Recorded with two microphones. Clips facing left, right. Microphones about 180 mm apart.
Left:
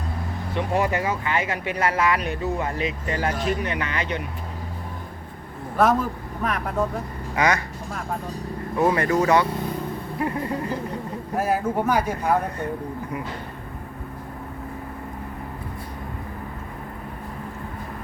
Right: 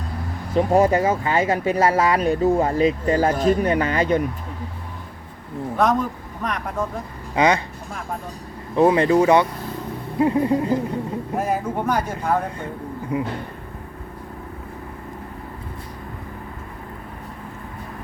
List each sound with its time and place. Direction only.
0.5 s speech: 35° right (ahead or behind)
5.7 s speech: 5° left (ahead or behind)
7.3 s speech: 25° right (ahead or behind)
8.7 s speech: 20° right (ahead or behind)
11.3 s speech: 5° left (ahead or behind)